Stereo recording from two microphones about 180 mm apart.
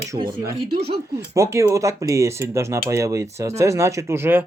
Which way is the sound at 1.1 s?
15° right (ahead or behind).